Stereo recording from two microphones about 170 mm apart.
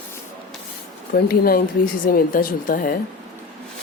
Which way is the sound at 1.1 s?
60° left (ahead or behind).